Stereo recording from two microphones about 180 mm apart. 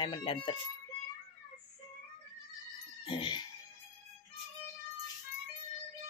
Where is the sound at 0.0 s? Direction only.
25° left (ahead or behind).